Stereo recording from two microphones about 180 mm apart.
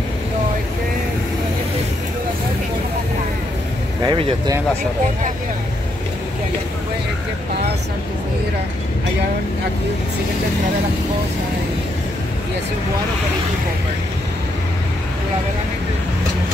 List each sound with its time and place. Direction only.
4.0 s speech: 25° right (ahead or behind)